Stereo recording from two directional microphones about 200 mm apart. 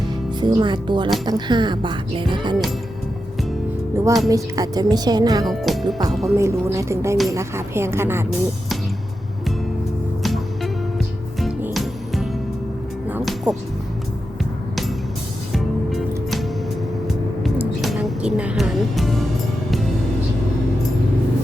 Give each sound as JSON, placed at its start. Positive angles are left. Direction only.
{"t": 0.3, "sound": "speech", "side_deg": -20}
{"t": 3.9, "sound": "speech", "side_deg": -15}
{"t": 5.5, "sound": "speech", "side_deg": 0}
{"t": 6.3, "sound": "a woman's voice", "side_deg": -15}
{"t": 10.2, "sound": "music", "side_deg": 0}
{"t": 15.5, "sound": "music", "side_deg": 0}